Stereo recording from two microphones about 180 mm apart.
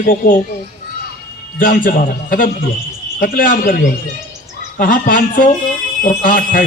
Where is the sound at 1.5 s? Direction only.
50° left (ahead or behind).